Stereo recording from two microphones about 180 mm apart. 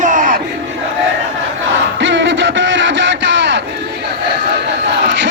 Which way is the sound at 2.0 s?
90° right.